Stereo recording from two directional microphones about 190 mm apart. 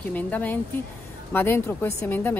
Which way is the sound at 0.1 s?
10° left (ahead or behind).